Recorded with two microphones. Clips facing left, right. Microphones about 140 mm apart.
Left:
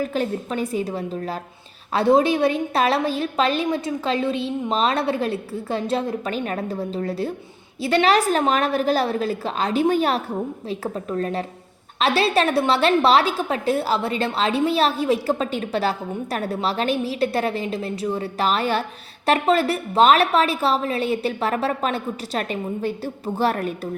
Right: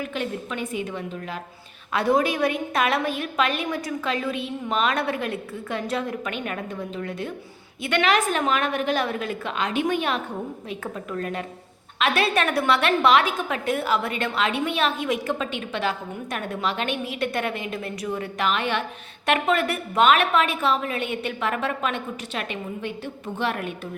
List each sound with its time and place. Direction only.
0.0 s a woman's voice: 35° left (ahead or behind)